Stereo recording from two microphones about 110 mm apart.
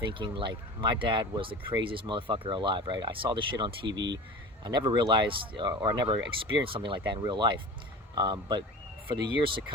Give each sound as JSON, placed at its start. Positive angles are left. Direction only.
{"t": 0.0, "sound": "speech", "side_deg": -50}
{"t": 6.4, "sound": "speech", "side_deg": -50}